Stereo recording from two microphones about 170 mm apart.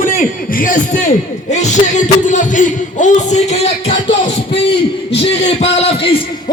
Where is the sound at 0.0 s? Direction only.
50° left (ahead or behind).